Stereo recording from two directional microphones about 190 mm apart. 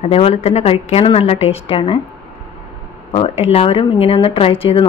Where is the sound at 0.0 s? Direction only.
30° left (ahead or behind).